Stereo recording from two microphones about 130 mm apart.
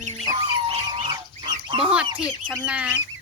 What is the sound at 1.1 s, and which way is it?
Fowl, 35° right (ahead or behind).